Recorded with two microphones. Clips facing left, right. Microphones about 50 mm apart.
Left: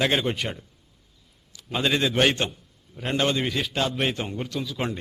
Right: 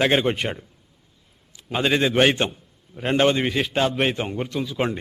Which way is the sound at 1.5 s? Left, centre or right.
Right.